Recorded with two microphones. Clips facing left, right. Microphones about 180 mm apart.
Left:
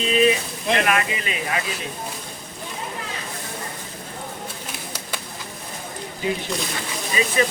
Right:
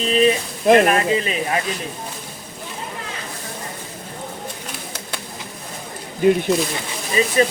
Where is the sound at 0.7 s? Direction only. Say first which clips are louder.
Right 8 dB; 45° right (ahead or behind).